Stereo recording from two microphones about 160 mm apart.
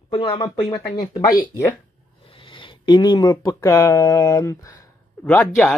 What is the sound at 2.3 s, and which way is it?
Speech, 30° left (ahead or behind).